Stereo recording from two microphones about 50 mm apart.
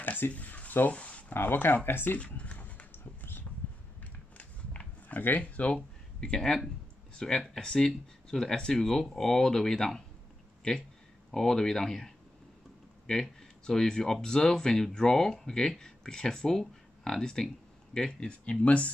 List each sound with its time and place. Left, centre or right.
0.0 s speech: left
1.3 s speech: left
2.1 s a sound: left
5.4 s speech: left
11.3 s speech: centre